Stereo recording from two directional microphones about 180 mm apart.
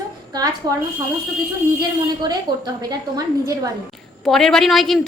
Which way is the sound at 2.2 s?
20° right (ahead or behind).